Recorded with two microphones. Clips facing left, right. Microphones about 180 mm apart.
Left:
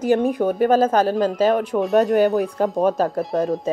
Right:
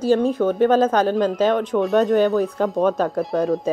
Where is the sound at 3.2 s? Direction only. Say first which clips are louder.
Right 1 dB; centre (ahead or behind).